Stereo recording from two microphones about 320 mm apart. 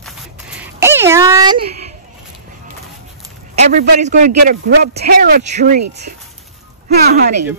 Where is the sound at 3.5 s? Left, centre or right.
Right.